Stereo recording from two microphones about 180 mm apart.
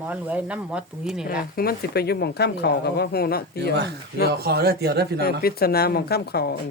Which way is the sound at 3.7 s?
70° right (ahead or behind).